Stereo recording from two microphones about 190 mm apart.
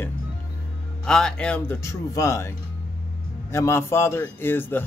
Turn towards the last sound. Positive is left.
turn(degrees=10)  # may be behind; listen again after turning